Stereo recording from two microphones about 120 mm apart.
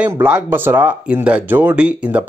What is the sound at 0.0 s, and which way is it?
Speech, 10° right (ahead or behind).